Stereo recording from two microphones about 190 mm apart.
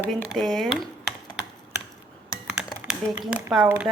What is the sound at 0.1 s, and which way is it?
Speech, centre (ahead or behind).